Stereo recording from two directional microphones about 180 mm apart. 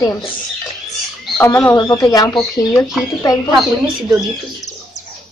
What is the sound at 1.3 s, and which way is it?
Speech, 10° left (ahead or behind).